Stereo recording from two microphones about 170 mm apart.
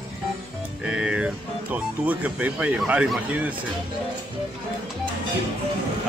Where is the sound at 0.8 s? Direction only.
5° right (ahead or behind).